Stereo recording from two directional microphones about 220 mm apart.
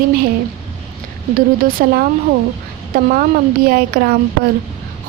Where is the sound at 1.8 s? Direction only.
45° right (ahead or behind).